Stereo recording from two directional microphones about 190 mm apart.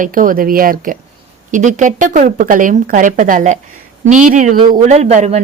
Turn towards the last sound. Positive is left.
turn(degrees=-35)  # may be behind; listen again after turning